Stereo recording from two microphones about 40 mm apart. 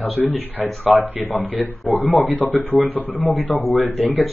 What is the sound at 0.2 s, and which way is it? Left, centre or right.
Speech, centre.